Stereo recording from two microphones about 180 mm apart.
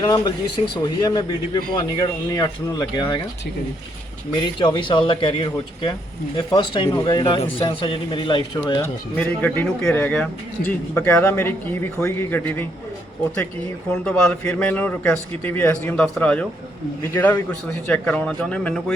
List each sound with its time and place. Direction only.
0.0 s speech: 20° left (ahead or behind)
4.4 s speech: 25° left (ahead or behind)
9.1 s a man's voice: 10° left (ahead or behind)
13.9 s a man's voice: 5° left (ahead or behind)